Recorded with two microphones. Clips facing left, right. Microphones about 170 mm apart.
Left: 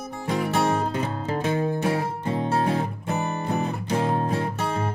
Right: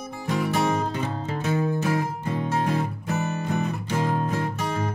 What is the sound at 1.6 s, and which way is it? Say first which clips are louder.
Music: even; 30° left (ahead or behind).